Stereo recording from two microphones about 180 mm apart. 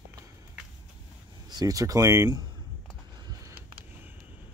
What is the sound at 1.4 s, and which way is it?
Speech, 20° right (ahead or behind).